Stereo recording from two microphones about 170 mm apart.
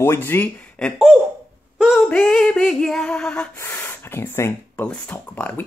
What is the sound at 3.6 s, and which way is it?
Speech, 15° left (ahead or behind).